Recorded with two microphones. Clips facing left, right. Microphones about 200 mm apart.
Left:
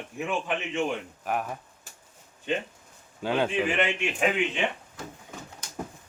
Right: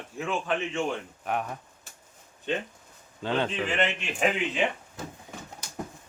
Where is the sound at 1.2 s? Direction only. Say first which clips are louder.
Even; 5° left (ahead or behind).